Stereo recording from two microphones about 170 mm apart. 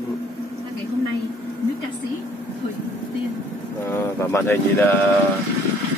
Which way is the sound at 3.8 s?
15° left (ahead or behind).